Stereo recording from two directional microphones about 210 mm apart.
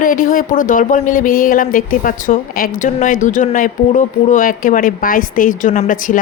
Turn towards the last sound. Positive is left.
turn(degrees=40)  # may be behind; listen again after turning